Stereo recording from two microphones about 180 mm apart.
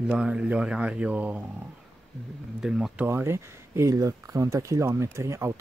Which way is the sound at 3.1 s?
15° right (ahead or behind).